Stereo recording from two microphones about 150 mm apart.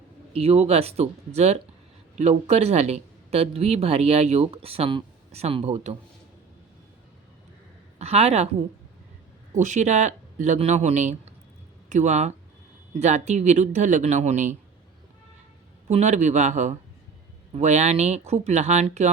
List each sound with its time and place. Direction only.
0.3 s speech: 40° right (ahead or behind)
7.9 s a woman's voice: 45° right (ahead or behind)
9.6 s speech: 55° right (ahead or behind)
15.9 s speech: 50° right (ahead or behind)